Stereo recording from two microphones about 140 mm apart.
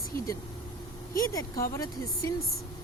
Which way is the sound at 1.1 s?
25° left (ahead or behind).